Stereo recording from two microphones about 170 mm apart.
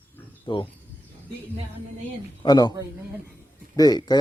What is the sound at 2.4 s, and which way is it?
Speech, 25° left (ahead or behind).